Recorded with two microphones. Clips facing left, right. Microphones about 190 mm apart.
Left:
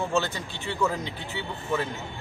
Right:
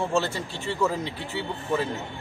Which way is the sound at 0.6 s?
5° right (ahead or behind).